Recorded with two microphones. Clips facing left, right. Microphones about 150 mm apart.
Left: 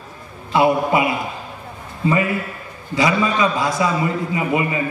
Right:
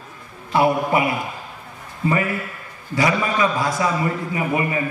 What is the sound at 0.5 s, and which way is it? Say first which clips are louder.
A man's voice: left 2 dB; 20° left (ahead or behind).